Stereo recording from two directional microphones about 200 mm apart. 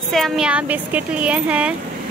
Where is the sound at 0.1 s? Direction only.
Centre (ahead or behind).